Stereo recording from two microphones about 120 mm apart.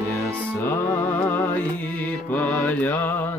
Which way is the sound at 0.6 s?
15° left (ahead or behind).